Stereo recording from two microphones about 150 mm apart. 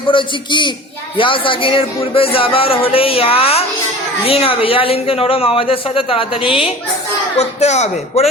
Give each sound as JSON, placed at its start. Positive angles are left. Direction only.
{"t": 0.1, "sound": "speech", "side_deg": 35}
{"t": 7.3, "sound": "speech", "side_deg": 50}